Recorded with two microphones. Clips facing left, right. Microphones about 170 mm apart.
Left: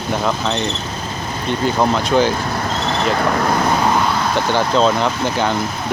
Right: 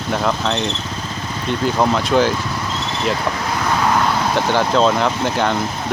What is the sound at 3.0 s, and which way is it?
Speech, 55° left (ahead or behind).